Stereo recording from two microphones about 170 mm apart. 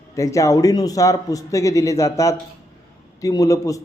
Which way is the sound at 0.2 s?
20° left (ahead or behind).